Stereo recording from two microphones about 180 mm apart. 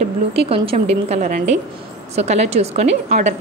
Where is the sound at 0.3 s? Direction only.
30° right (ahead or behind).